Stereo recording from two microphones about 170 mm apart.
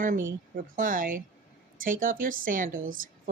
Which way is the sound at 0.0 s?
55° right (ahead or behind).